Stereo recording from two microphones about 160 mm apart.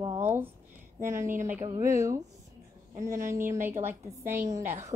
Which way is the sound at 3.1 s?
55° right (ahead or behind).